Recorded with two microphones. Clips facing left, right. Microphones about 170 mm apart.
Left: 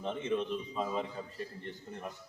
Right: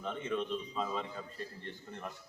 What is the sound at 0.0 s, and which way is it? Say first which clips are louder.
A man's voice: left 3 dB; 20° left (ahead or behind).